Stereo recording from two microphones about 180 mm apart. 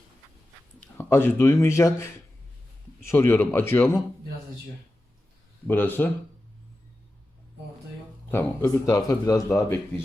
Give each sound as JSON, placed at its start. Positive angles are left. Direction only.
{"t": 0.9, "sound": "speech", "side_deg": 15}
{"t": 5.6, "sound": "speech", "side_deg": 10}
{"t": 8.3, "sound": "speech", "side_deg": 10}